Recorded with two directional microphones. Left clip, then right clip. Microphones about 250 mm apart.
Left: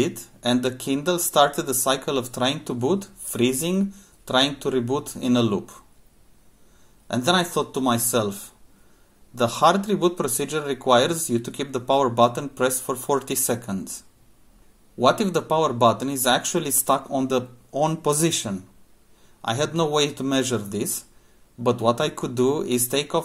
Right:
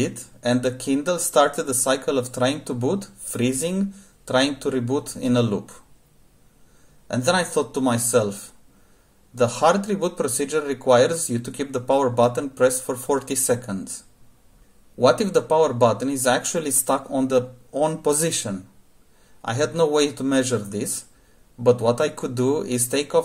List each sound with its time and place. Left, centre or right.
0.4 s speech: centre
7.1 s speech: centre
9.4 s speech: centre